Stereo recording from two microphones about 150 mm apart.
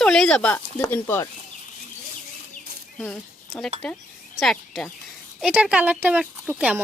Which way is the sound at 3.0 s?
5° left (ahead or behind).